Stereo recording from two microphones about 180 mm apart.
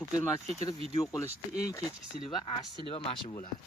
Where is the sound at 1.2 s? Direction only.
15° left (ahead or behind).